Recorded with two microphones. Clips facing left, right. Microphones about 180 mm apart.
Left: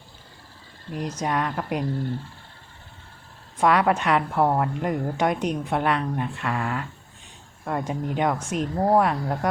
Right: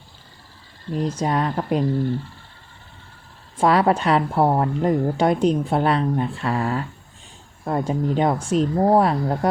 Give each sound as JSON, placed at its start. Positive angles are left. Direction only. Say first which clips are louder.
{"t": 0.9, "sound": "a woman's voice", "louder": "right 4 dB", "side_deg": -30}
{"t": 3.6, "sound": "a woman's voice", "louder": "right 3 dB", "side_deg": -30}